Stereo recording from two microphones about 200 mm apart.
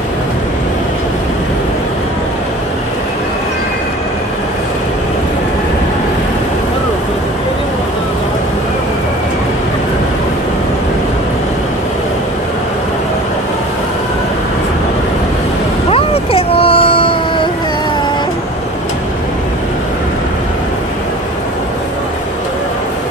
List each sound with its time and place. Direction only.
15.9 s vehicle: 30° left (ahead or behind)